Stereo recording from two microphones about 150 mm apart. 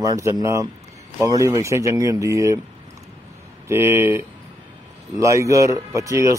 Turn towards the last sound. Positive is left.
turn(degrees=-20)  # may be behind; listen again after turning